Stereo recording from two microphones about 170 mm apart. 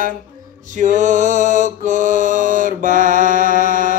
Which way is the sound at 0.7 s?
45° right (ahead or behind).